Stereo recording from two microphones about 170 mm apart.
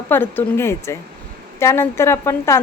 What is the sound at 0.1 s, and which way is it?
Speech, 10° left (ahead or behind).